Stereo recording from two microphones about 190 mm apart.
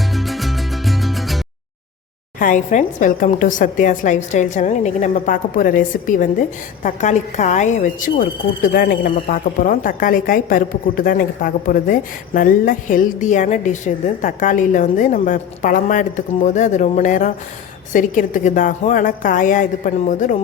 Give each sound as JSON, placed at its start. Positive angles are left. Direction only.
{"t": 0.1, "sound": "music", "side_deg": 0}
{"t": 2.4, "sound": "a woman's voice", "side_deg": 40}